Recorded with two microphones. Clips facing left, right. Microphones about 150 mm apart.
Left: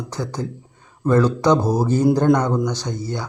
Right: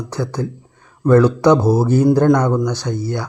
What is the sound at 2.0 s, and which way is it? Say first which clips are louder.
Speech: right 2 dB; 10° left (ahead or behind).